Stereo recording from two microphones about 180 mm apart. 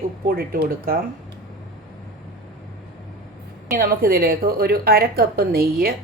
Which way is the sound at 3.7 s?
55° right (ahead or behind).